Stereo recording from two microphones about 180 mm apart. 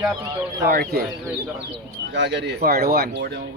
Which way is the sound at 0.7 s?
55° right (ahead or behind).